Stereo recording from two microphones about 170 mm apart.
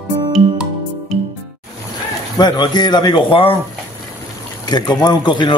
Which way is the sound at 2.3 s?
25° left (ahead or behind).